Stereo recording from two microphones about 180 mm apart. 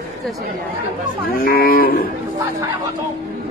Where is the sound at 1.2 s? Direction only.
55° left (ahead or behind).